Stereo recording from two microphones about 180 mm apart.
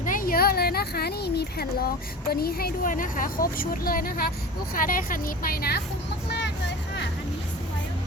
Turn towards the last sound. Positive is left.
turn(degrees=70)  # may be behind; listen again after turning